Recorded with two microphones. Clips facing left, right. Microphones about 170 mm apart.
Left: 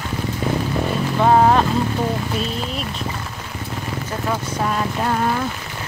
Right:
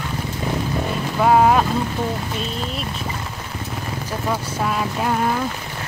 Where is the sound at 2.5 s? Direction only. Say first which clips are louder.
Left 1 dB; centre (ahead or behind).